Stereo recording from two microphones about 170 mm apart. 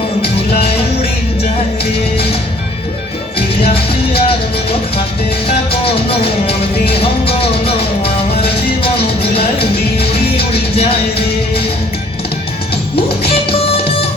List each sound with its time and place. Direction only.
3.7 s music: 35° left (ahead or behind)
5.5 s music: 35° left (ahead or behind)
9.2 s music: 35° left (ahead or behind)
13.3 s music: 35° left (ahead or behind)